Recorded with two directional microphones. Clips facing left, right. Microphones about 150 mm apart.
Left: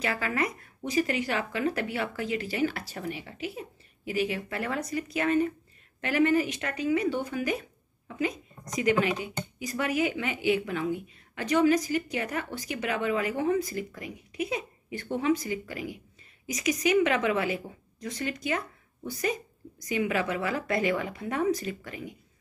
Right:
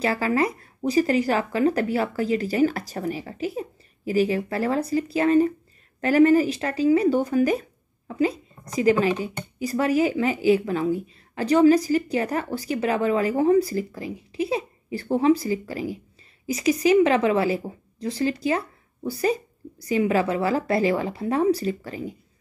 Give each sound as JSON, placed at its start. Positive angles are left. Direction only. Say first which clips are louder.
{"t": 0.0, "sound": "speech", "louder": "right 7 dB", "side_deg": -35}